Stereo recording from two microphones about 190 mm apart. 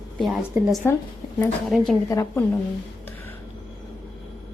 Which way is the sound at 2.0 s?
15° left (ahead or behind).